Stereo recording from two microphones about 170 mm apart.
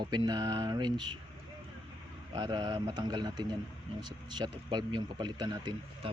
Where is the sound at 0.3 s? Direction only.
25° right (ahead or behind).